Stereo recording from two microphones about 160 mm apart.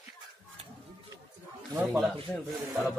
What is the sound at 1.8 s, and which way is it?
Speech, centre (ahead or behind).